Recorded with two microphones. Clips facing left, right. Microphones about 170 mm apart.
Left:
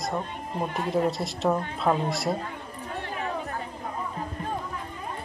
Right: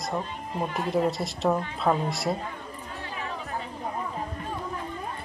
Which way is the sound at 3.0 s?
55° left (ahead or behind).